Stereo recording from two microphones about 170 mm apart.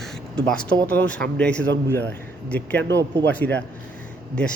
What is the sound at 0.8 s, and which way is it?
Speech, 10° left (ahead or behind).